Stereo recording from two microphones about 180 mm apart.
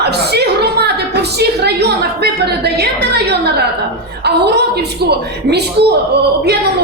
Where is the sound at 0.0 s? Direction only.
65° right (ahead or behind).